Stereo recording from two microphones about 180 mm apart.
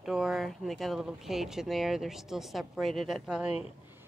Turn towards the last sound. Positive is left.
turn(degrees=-5)  # may be behind; listen again after turning